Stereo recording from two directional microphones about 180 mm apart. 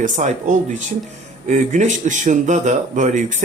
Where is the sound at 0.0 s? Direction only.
45° right (ahead or behind).